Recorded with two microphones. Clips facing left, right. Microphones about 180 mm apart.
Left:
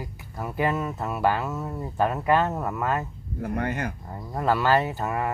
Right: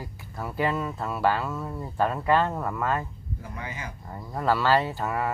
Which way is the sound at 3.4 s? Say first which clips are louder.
Left 11 dB; 65° left (ahead or behind).